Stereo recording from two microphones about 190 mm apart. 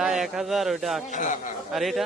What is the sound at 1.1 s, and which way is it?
Speech, 40° left (ahead or behind).